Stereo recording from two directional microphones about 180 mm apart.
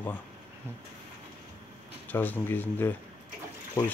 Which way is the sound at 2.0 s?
10° left (ahead or behind).